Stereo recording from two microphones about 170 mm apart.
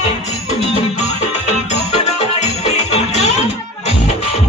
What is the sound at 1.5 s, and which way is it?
Music, 40° left (ahead or behind).